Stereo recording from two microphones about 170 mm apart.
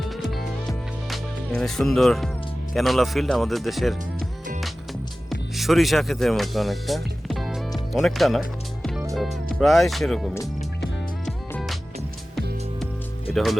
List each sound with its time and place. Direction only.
0.0 s music: centre (ahead or behind)
2.7 s speech: centre (ahead or behind)
4.2 s music: 50° right (ahead or behind)
5.3 s music: centre (ahead or behind)
9.6 s speech: centre (ahead or behind)
11.3 s music: centre (ahead or behind)
13.3 s speech: centre (ahead or behind)